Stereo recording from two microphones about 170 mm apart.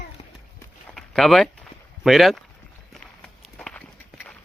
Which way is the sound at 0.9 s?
Centre (ahead or behind).